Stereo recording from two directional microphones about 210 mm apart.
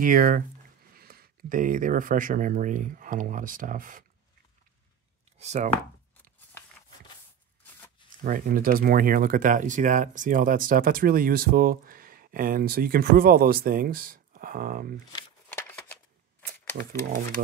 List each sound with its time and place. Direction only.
0.0 s speech: 40° right (ahead or behind)
5.4 s speech: 35° right (ahead or behind)
8.2 s speech: 40° right (ahead or behind)